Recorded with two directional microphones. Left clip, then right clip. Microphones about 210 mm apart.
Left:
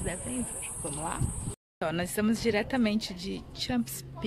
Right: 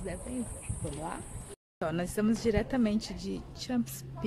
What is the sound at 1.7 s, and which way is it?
Speech, centre (ahead or behind).